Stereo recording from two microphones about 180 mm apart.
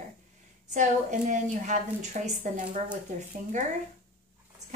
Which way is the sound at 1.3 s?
45° right (ahead or behind).